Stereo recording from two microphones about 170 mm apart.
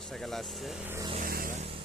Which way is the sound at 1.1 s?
60° right (ahead or behind).